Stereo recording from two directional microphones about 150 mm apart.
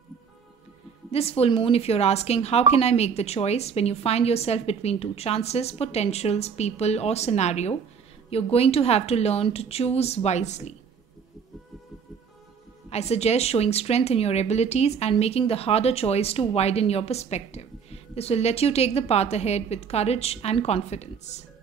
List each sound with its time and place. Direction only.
1.1 s speech: 40° left (ahead or behind)
12.9 s speech: 45° left (ahead or behind)